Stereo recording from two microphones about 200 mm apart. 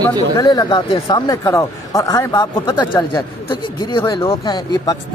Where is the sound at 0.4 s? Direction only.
20° left (ahead or behind).